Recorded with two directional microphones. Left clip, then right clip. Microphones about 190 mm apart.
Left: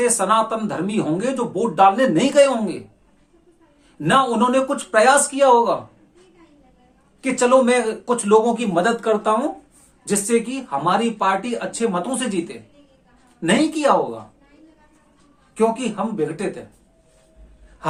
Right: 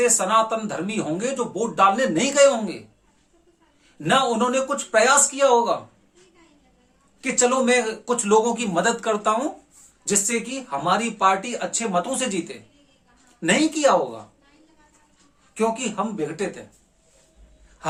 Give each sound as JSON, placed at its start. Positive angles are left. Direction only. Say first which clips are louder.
{"t": 0.0, "sound": "speech", "louder": "left 1 dB", "side_deg": 10}
{"t": 4.0, "sound": "speech", "louder": "left 3 dB", "side_deg": 10}
{"t": 7.2, "sound": "a man's voice", "louder": "left 5 dB", "side_deg": 0}
{"t": 15.5, "sound": "a man's voice", "louder": "left 3 dB", "side_deg": -15}